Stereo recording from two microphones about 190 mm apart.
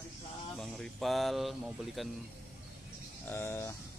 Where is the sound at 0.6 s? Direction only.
Centre (ahead or behind).